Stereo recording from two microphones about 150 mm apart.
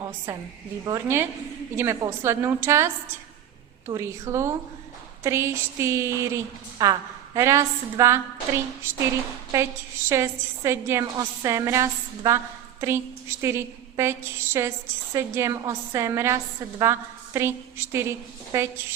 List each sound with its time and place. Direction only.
0.3 s a woman's voice: 15° right (ahead or behind)
10.1 s a woman's voice: 20° right (ahead or behind)